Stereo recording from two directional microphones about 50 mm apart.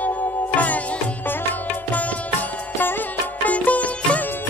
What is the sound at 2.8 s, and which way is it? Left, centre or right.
Music, left.